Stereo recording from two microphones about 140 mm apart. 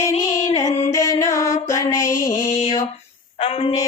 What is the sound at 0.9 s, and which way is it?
Music, 20° left (ahead or behind).